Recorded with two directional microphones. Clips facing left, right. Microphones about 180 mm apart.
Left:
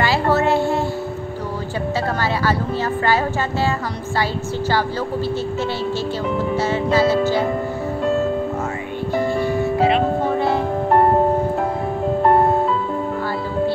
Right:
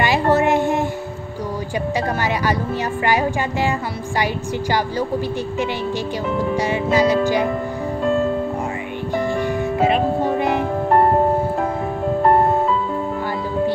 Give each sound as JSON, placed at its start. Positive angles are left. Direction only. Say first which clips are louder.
{"t": 0.0, "sound": "a sound", "louder": "right 1 dB", "side_deg": -15}
{"t": 2.4, "sound": "speech", "louder": "left 1 dB", "side_deg": -15}
{"t": 6.5, "sound": "speech", "louder": "even", "side_deg": -15}
{"t": 9.1, "sound": "music", "louder": "left 1 dB", "side_deg": -15}